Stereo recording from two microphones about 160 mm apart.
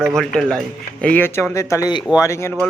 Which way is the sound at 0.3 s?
5° left (ahead or behind).